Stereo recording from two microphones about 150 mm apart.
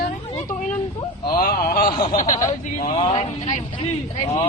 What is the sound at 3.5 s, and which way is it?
Speech, 55° left (ahead or behind).